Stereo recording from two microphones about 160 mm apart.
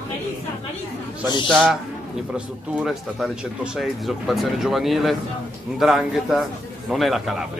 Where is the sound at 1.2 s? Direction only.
25° left (ahead or behind).